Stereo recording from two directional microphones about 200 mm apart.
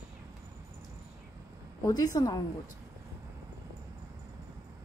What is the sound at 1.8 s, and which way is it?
Speech, 15° left (ahead or behind).